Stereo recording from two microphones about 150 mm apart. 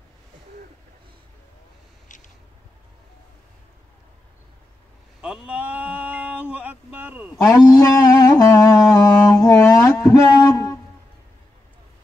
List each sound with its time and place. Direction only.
5.2 s male singing: 5° right (ahead or behind)
7.3 s music: 25° left (ahead or behind)